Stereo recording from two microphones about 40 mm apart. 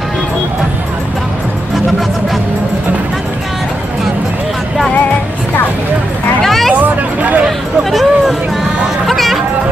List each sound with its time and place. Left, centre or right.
6.4 s hubbub: centre
6.8 s hubbub: right
7.9 s a sound: centre
9.0 s music: centre